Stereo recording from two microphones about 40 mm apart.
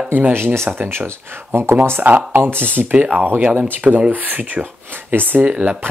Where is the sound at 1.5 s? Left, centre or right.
Right.